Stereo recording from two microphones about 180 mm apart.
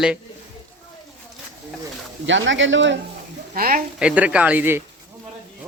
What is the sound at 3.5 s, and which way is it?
Speech, 50° right (ahead or behind).